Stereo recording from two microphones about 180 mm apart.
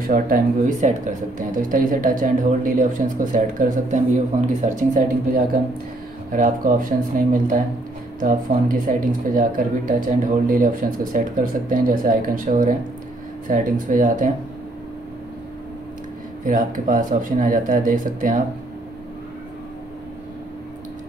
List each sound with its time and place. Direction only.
0.0 s speech: 50° right (ahead or behind)
16.4 s speech: 45° right (ahead or behind)